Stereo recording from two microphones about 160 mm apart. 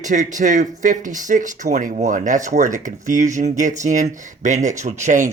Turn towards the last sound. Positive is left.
turn(degrees=-50)  # may be behind; listen again after turning